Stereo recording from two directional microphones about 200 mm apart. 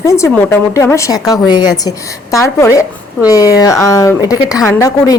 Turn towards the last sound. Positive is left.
turn(degrees=15)  # may be behind; listen again after turning